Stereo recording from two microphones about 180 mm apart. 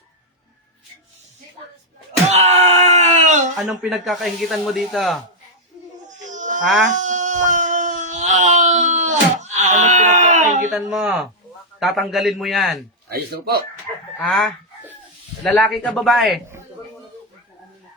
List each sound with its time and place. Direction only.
2.3 s wail: 35° right (ahead or behind)
3.6 s speech: centre (ahead or behind)
6.2 s baby cry: 45° right (ahead or behind)
10.7 s speech: centre (ahead or behind)
13.1 s speech: 60° right (ahead or behind)
14.2 s chicken: 5° left (ahead or behind)
15.4 s speech: 5° left (ahead or behind)